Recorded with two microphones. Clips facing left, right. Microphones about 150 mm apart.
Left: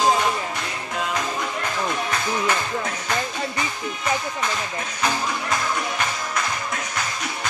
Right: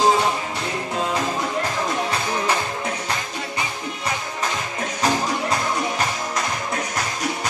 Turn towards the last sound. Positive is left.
turn(degrees=-35)  # may be behind; listen again after turning